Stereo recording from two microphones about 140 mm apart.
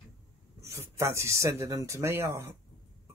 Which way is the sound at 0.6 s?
20° right (ahead or behind).